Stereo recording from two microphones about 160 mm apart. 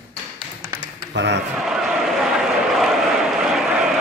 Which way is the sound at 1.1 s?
90° right.